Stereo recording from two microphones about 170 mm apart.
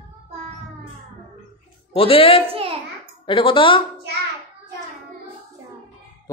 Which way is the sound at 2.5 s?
35° right (ahead or behind).